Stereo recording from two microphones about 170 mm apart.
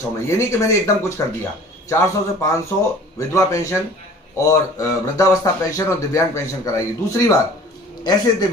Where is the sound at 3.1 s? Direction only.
20° left (ahead or behind).